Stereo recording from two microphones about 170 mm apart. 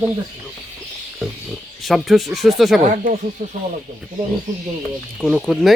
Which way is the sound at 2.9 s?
50° right (ahead or behind).